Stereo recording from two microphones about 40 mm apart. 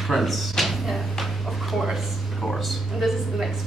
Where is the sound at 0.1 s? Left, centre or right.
Centre.